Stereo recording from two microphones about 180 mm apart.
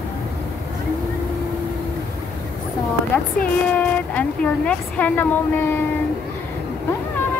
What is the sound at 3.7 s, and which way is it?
A woman's voice, 10° left (ahead or behind).